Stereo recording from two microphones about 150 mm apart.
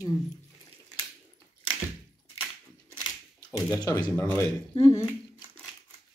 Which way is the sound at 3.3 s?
25° left (ahead or behind).